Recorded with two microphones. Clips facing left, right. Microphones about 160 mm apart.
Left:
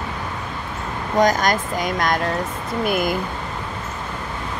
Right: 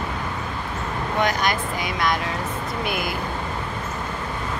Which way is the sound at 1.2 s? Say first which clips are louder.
Left 6 dB; 45° left (ahead or behind).